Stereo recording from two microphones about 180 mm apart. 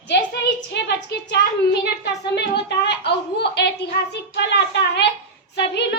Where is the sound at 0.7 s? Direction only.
70° left (ahead or behind).